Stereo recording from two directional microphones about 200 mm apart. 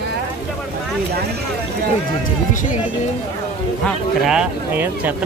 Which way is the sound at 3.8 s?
5° right (ahead or behind).